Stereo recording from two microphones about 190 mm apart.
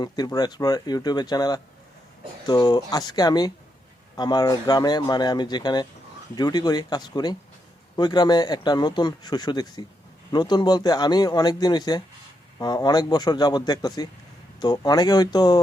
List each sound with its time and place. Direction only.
0.0 s speech: 20° left (ahead or behind)